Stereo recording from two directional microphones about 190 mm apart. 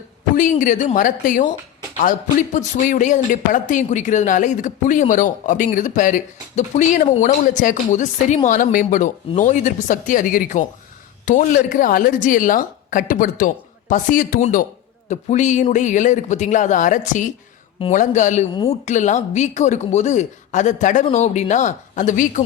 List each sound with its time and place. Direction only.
0.3 s a woman's voice: 45° left (ahead or behind)